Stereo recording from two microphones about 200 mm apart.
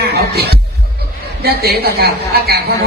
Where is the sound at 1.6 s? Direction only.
50° right (ahead or behind).